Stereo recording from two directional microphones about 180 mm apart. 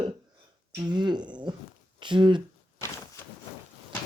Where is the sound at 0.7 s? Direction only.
25° right (ahead or behind).